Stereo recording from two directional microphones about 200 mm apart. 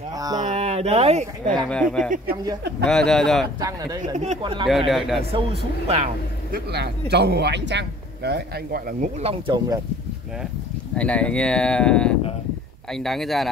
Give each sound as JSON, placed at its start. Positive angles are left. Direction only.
{"t": 0.4, "sound": "speech", "side_deg": -35}
{"t": 1.5, "sound": "speech", "side_deg": 5}
{"t": 3.6, "sound": "speech", "side_deg": -20}
{"t": 4.2, "sound": "speech", "side_deg": -30}
{"t": 4.6, "sound": "speech", "side_deg": 0}
{"t": 6.5, "sound": "a man's voice", "side_deg": -55}
{"t": 9.0, "sound": "speech", "side_deg": -30}
{"t": 11.0, "sound": "speech", "side_deg": 5}